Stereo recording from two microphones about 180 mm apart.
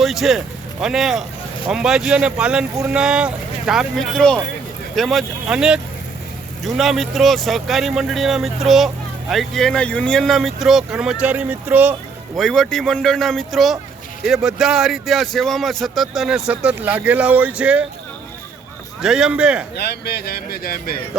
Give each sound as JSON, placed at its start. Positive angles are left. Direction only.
{"t": 0.0, "sound": "speech", "side_deg": 0}
{"t": 12.4, "sound": "speech", "side_deg": 5}
{"t": 19.0, "sound": "speech", "side_deg": -5}
{"t": 19.7, "sound": "speech", "side_deg": 65}